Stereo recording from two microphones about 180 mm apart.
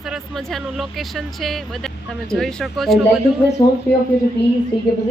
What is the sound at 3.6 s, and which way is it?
Speech, 20° left (ahead or behind).